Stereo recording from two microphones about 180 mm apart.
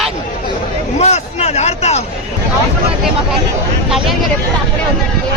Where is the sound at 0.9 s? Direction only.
35° left (ahead or behind).